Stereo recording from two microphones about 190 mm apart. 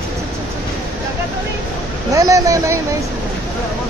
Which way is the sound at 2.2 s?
15° right (ahead or behind).